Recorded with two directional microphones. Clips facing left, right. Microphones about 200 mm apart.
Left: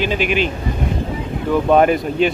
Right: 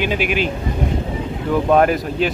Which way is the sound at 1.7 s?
Centre (ahead or behind).